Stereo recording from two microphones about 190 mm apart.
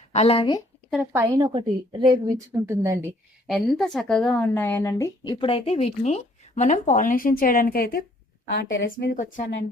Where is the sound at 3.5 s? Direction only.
Centre (ahead or behind); by 8.1 s 50° left (ahead or behind).